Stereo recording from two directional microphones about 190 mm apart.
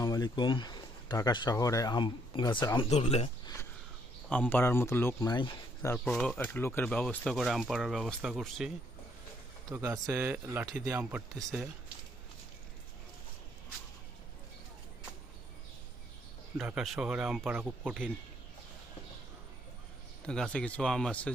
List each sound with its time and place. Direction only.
0.0 s speech: 20° left (ahead or behind)
3.4 s a sound: 15° left (ahead or behind)
4.3 s speech: 10° left (ahead or behind)
5.9 s speech: 5° left (ahead or behind)
9.6 s speech: 15° right (ahead or behind)
16.6 s speech: centre (ahead or behind)
20.2 s speech: 5° left (ahead or behind)